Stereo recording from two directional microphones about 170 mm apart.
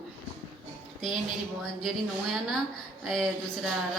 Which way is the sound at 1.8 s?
Centre (ahead or behind).